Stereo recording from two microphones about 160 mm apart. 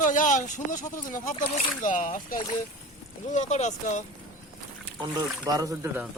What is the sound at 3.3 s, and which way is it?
Speech, 45° left (ahead or behind).